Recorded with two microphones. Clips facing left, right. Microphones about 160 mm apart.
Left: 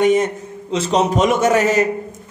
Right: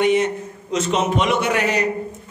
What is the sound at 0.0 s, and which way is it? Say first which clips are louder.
Speech: left 3 dB; 45° left (ahead or behind).